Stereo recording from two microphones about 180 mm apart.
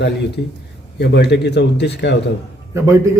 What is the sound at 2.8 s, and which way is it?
Speech, 15° right (ahead or behind).